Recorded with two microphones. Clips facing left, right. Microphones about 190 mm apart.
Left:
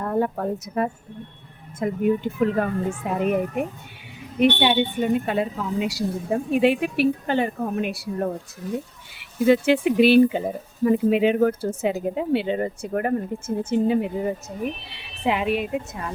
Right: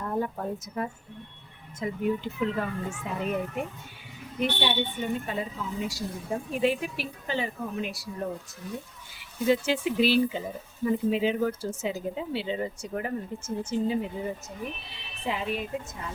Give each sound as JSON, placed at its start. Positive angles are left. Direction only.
{"t": 0.0, "sound": "speech", "side_deg": 70}
{"t": 1.8, "sound": "speech", "side_deg": 55}
{"t": 4.4, "sound": "a woman's voice", "side_deg": 70}